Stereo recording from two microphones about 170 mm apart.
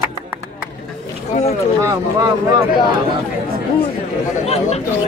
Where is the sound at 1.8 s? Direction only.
20° right (ahead or behind).